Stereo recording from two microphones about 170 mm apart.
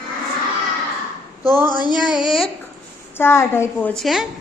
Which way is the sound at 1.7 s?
25° left (ahead or behind).